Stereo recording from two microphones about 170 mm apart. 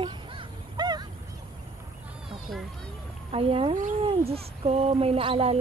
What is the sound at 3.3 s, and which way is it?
Speech, 35° right (ahead or behind).